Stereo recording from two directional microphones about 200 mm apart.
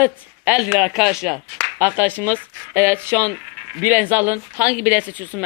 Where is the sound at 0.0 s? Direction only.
5° right (ahead or behind).